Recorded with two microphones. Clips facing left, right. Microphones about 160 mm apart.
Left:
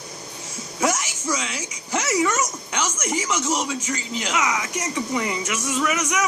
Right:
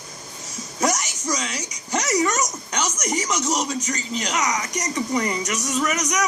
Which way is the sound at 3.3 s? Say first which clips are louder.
Even; 10° right (ahead or behind).